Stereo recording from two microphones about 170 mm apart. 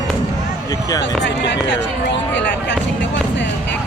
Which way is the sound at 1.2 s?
90° left.